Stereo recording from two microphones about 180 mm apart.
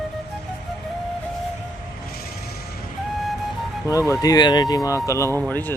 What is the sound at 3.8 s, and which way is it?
Speech, 15° left (ahead or behind).